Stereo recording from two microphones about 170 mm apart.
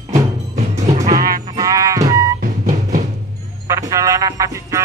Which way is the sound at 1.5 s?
20° right (ahead or behind).